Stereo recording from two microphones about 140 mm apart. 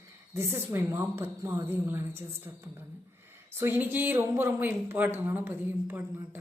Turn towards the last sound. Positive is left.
turn(degrees=-15)  # may be behind; listen again after turning